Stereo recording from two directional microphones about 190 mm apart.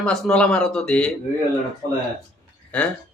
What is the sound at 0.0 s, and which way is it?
A man's voice, 5° left (ahead or behind).